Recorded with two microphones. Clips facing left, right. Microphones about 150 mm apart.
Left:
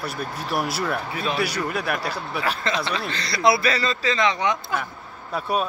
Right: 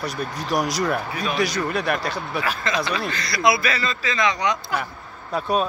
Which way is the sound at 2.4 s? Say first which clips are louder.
Even; 30° left (ahead or behind).